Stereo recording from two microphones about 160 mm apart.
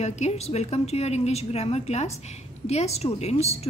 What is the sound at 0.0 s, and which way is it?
A woman's voice, 45° left (ahead or behind).